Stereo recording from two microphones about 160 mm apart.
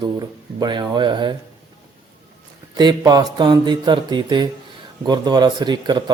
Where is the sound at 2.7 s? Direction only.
25° right (ahead or behind).